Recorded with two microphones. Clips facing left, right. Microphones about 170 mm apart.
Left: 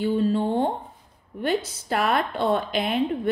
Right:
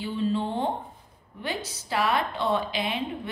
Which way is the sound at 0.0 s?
45° left (ahead or behind).